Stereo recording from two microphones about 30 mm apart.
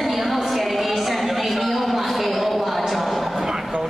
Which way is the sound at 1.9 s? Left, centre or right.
Centre.